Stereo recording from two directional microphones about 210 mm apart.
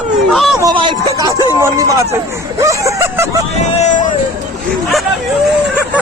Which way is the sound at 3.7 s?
35° left (ahead or behind).